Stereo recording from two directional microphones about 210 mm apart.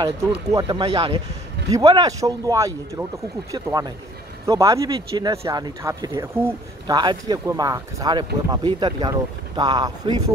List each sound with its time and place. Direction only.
0.0 s speech: 20° right (ahead or behind)